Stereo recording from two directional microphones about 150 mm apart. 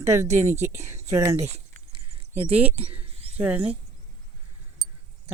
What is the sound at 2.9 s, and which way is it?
Cricket, 40° right (ahead or behind).